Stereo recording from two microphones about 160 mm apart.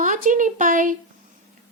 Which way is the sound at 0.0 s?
55° right (ahead or behind).